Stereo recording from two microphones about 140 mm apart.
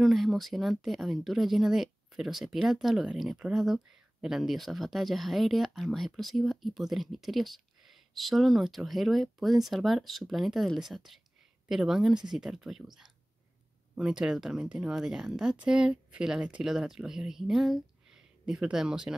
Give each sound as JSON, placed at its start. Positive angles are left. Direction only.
{"t": 0.0, "sound": "speech", "side_deg": 0}